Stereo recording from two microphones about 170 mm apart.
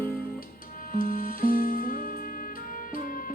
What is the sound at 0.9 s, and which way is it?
Music, 60° left (ahead or behind).